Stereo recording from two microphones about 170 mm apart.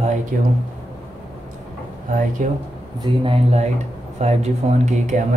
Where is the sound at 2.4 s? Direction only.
50° right (ahead or behind).